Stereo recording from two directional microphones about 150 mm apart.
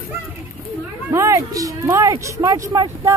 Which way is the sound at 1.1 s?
20° right (ahead or behind).